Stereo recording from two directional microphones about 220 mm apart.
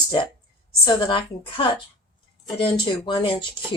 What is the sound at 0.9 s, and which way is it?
Speech, 20° left (ahead or behind).